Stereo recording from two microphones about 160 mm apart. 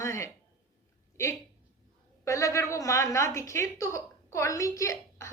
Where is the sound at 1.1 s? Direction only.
20° left (ahead or behind).